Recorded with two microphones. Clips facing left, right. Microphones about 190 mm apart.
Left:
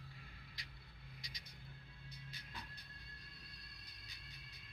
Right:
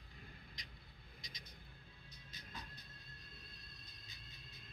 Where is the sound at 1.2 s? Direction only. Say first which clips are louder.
Even; 20° right (ahead or behind).